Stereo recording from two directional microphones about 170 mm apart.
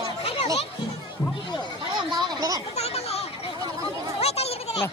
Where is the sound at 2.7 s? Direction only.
35° left (ahead or behind).